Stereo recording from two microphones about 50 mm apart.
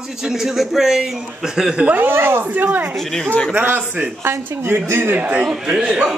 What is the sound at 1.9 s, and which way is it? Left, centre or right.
Speech, right.